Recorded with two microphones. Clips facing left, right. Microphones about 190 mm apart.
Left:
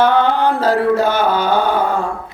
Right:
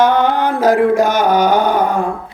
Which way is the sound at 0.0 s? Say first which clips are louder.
Right 1 dB; 15° right (ahead or behind).